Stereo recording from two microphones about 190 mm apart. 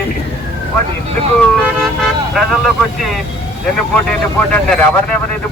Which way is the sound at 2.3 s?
Centre (ahead or behind).